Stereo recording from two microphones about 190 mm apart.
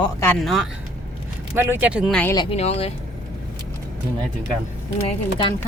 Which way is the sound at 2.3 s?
25° left (ahead or behind).